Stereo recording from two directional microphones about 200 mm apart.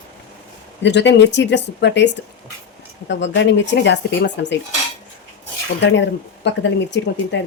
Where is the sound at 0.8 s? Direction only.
60° left (ahead or behind).